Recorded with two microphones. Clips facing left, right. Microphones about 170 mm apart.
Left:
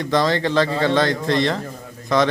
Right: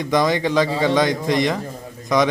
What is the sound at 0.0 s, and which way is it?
Speech, 15° right (ahead or behind).